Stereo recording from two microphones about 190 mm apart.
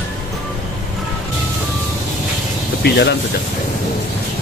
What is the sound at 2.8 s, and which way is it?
Speech, 60° left (ahead or behind).